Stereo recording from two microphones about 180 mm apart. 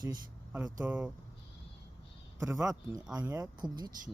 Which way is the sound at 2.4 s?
15° right (ahead or behind).